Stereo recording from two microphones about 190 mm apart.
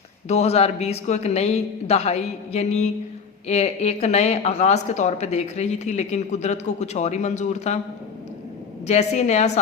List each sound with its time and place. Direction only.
0.3 s speech: 35° left (ahead or behind)
8.9 s speech: 35° left (ahead or behind)